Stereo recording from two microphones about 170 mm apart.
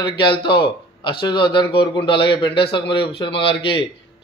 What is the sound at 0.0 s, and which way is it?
Speech, 30° left (ahead or behind).